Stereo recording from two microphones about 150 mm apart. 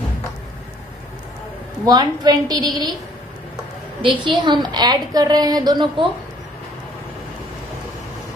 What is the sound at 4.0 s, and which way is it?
A woman's voice, 30° right (ahead or behind).